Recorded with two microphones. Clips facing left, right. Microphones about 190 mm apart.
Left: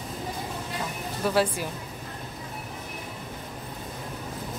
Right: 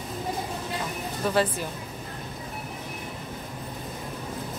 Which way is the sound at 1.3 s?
10° left (ahead or behind).